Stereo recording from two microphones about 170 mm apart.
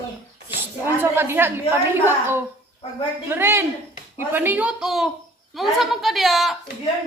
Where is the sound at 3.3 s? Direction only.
15° right (ahead or behind).